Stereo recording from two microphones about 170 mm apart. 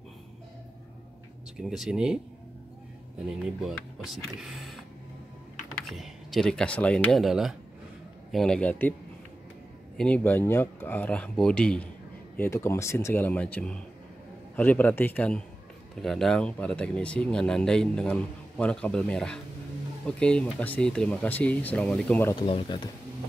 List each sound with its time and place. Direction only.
1.6 s speech: 5° right (ahead or behind)
3.3 s speech: centre (ahead or behind)
5.9 s speech: centre (ahead or behind)
9.9 s speech: 5° left (ahead or behind)
22.3 s speech: 30° left (ahead or behind)